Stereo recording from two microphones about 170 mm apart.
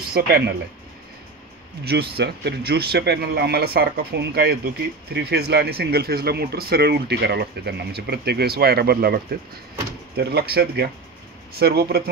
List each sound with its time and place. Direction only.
0.0 s speech: 65° right (ahead or behind)
1.9 s speech: 70° right (ahead or behind)